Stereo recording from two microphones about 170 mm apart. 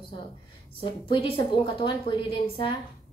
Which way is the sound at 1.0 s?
30° left (ahead or behind).